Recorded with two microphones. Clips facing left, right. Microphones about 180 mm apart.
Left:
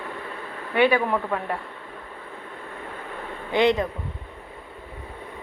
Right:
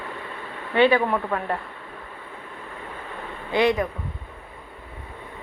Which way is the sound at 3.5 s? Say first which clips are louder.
Left 1 dB; 20° left (ahead or behind).